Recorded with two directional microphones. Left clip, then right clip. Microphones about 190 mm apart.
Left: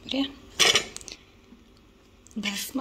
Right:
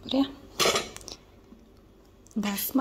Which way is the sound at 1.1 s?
15° right (ahead or behind).